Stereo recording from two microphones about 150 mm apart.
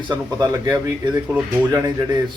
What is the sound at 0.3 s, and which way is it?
Speech, 25° right (ahead or behind).